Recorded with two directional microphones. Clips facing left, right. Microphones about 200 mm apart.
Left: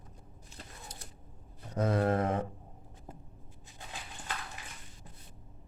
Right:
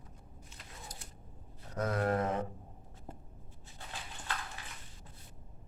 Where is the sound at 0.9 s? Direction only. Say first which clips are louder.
Left 1 dB; 25° left (ahead or behind).